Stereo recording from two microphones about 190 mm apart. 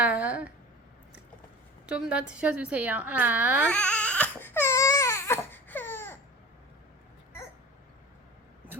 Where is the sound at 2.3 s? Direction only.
5° right (ahead or behind).